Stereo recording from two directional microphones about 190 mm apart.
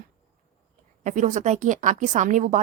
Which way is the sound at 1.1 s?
40° right (ahead or behind).